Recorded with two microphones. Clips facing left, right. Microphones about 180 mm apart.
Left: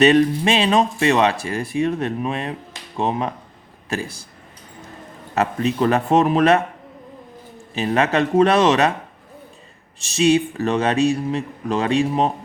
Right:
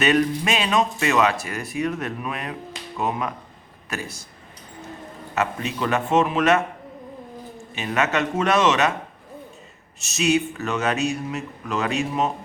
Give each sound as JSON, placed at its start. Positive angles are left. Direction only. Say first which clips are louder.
{"t": 0.0, "sound": "speech", "louder": "left 6 dB", "side_deg": 30}
{"t": 5.3, "sound": "speech", "louder": "left 5 dB", "side_deg": 35}
{"t": 7.8, "sound": "speech", "louder": "left 5 dB", "side_deg": 35}
{"t": 10.0, "sound": "speech", "louder": "left 5 dB", "side_deg": 30}